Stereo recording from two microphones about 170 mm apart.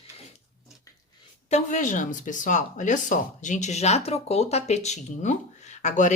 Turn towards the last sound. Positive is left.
turn(degrees=45)  # may be behind; listen again after turning